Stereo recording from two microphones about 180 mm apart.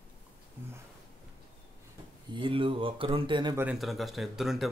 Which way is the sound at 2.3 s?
30° right (ahead or behind).